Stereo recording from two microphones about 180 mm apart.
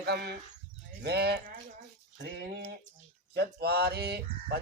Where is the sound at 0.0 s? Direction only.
65° right (ahead or behind).